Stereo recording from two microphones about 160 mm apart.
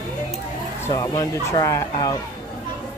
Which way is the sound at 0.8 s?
20° left (ahead or behind).